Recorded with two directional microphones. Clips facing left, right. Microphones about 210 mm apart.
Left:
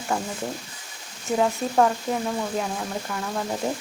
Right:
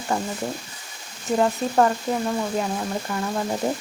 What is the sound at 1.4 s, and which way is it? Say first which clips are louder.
Speech: right 1 dB; centre (ahead or behind).